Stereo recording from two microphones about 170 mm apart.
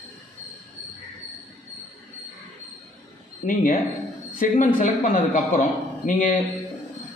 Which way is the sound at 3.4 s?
45° left (ahead or behind).